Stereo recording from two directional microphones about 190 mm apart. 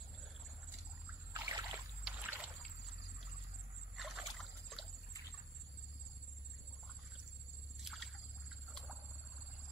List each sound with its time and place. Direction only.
1.3 s rowboat: 15° right (ahead or behind)
2.0 s boat: 10° right (ahead or behind)
3.9 s boat: centre (ahead or behind)
7.8 s rowboat: centre (ahead or behind)